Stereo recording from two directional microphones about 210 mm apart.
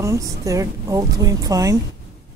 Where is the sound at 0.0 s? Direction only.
15° right (ahead or behind).